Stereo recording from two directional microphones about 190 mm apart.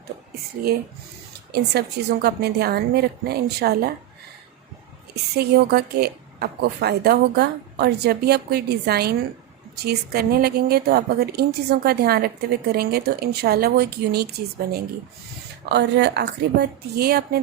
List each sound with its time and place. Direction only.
1.5 s a woman's voice: 60° right (ahead or behind)
5.4 s a woman's voice: 55° right (ahead or behind)